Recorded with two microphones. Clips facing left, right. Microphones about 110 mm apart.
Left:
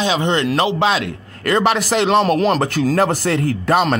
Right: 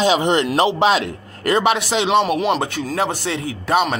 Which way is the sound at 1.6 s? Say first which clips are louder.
Left 2 dB; 5° right (ahead or behind).